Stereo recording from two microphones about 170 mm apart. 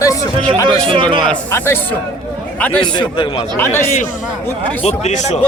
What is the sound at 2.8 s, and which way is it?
Speech, 25° left (ahead or behind).